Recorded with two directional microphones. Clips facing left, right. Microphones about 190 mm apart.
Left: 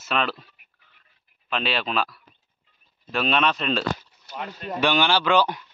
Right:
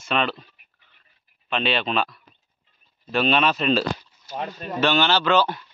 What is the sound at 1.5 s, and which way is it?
Speech, centre (ahead or behind).